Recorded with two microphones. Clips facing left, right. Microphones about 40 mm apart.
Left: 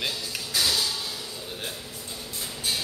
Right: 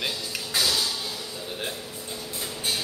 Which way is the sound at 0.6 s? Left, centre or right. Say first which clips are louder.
Right 1 dB; centre.